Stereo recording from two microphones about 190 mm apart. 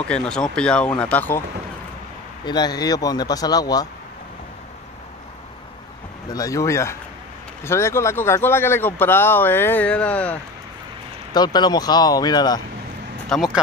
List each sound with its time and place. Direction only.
0.1 s speech: 5° left (ahead or behind)
2.4 s speech: 20° left (ahead or behind)
6.2 s speech: 20° left (ahead or behind)
11.3 s speech: 20° left (ahead or behind)
13.3 s speech: centre (ahead or behind)